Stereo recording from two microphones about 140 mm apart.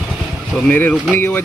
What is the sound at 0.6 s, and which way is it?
Speech, 10° left (ahead or behind).